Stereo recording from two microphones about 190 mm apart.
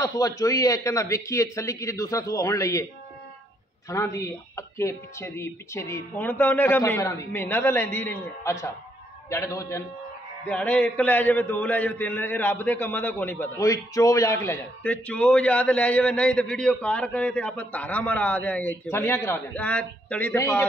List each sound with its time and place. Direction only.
0.0 s a man's voice: 20° left (ahead or behind)
3.9 s a man's voice: 15° left (ahead or behind)